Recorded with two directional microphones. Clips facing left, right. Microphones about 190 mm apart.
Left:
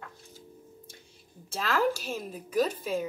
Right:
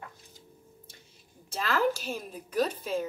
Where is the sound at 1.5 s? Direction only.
5° left (ahead or behind).